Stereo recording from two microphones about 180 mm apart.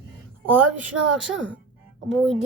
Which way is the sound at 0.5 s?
10° right (ahead or behind).